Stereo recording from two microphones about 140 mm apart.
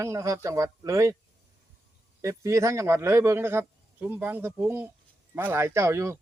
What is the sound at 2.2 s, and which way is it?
Speech, 20° right (ahead or behind).